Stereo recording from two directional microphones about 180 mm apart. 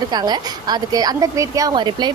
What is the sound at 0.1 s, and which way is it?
A woman's voice, 25° right (ahead or behind).